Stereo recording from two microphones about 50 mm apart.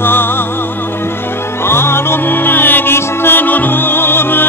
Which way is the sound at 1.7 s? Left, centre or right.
Left.